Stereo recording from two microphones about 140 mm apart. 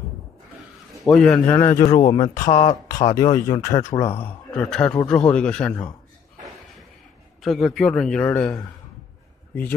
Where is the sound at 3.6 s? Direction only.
25° left (ahead or behind).